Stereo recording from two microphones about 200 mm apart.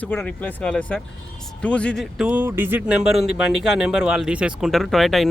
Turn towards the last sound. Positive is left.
turn(degrees=0)  # may be behind; listen again after turning